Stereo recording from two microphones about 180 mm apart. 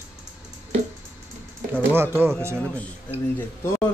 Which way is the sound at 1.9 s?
15° right (ahead or behind).